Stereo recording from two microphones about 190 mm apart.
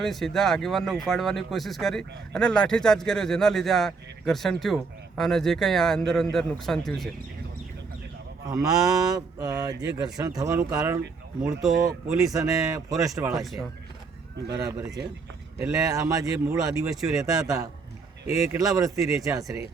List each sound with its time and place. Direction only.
0.0 s speech: centre (ahead or behind)
8.4 s cattle: 20° right (ahead or behind)
11.4 s speech: centre (ahead or behind)
12.3 s speech: 20° right (ahead or behind)
13.3 s speech: centre (ahead or behind)
14.4 s cattle: 20° right (ahead or behind)
15.5 s speech: 15° right (ahead or behind)
18.4 s speech: 15° right (ahead or behind)